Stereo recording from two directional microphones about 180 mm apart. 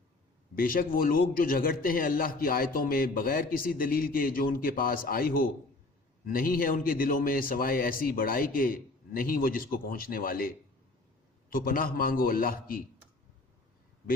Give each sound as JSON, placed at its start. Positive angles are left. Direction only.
{"t": 0.5, "sound": "a man's voice", "side_deg": 50}